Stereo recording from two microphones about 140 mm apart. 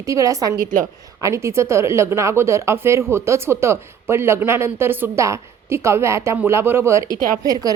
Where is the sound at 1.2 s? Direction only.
20° right (ahead or behind).